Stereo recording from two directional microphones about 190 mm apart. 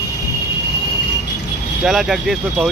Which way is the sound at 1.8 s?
Centre (ahead or behind).